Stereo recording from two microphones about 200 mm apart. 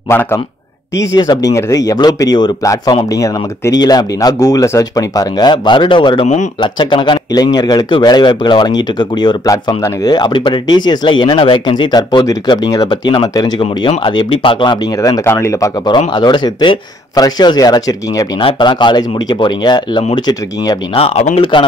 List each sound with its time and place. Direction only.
0.1 s speech: 10° left (ahead or behind)